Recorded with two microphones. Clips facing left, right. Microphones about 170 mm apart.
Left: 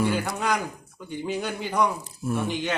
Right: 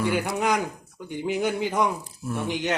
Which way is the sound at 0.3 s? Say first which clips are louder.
Right 2 dB; 20° right (ahead or behind).